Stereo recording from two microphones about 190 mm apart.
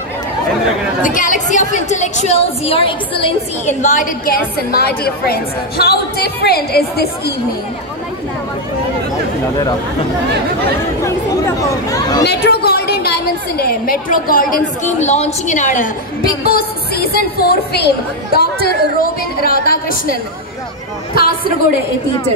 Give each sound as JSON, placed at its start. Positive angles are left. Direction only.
{"t": 1.0, "sound": "a woman's voice", "side_deg": 45}
{"t": 11.1, "sound": "speech", "side_deg": 15}
{"t": 12.3, "sound": "a woman's voice", "side_deg": 55}